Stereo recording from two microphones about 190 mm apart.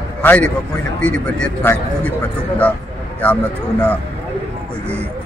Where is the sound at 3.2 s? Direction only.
10° left (ahead or behind).